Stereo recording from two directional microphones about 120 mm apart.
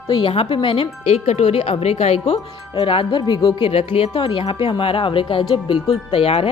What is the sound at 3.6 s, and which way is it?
Speech, 55° left (ahead or behind).